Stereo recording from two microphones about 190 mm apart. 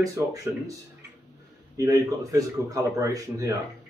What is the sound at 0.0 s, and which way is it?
Speech, 15° right (ahead or behind).